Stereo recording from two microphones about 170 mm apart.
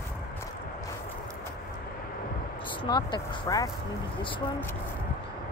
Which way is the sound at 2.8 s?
25° left (ahead or behind).